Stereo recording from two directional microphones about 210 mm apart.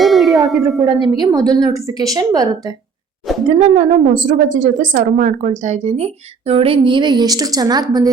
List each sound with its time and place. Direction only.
0.0 s a sound: centre (ahead or behind)
0.4 s a woman's voice: centre (ahead or behind)
1.2 s a woman's voice: 20° right (ahead or behind)
3.3 s a woman's voice: centre (ahead or behind)
3.6 s a woman's voice: 35° right (ahead or behind); by 8.1 s 20° right (ahead or behind)